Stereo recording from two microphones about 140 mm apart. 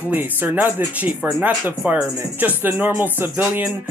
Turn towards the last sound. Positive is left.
turn(degrees=-10)  # may be behind; listen again after turning